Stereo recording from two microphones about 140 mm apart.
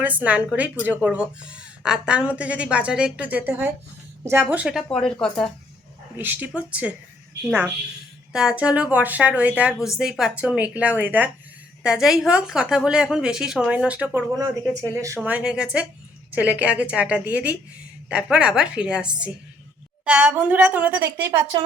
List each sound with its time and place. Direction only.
0.0 s a woman's voice: 10° right (ahead or behind)
4.9 s speech: 5° left (ahead or behind)
6.1 s a woman's voice: 10° right (ahead or behind)
15.2 s a woman's voice: 10° right (ahead or behind)